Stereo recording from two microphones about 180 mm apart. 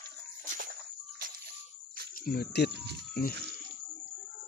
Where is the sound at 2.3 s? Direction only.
65° left (ahead or behind).